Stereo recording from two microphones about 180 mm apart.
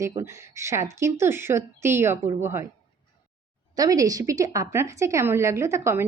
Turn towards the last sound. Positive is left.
turn(degrees=-15)  # may be behind; listen again after turning